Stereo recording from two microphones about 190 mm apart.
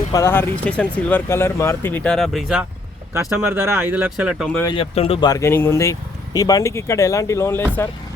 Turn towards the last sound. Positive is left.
turn(degrees=15)  # may be behind; listen again after turning